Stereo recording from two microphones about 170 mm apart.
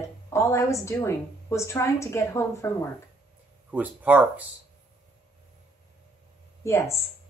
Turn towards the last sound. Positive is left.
turn(degrees=15)  # may be behind; listen again after turning